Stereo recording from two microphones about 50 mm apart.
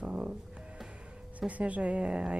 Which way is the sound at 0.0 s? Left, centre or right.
Right.